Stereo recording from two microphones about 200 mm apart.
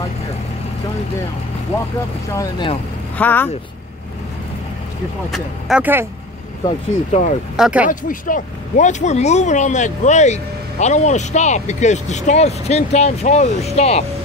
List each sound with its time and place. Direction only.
2.3 s speech: 15° left (ahead or behind)
5.3 s speech: 5° right (ahead or behind)
6.6 s speech: 35° left (ahead or behind)
7.5 s speech: 5° right (ahead or behind)
7.9 s speech: 40° left (ahead or behind)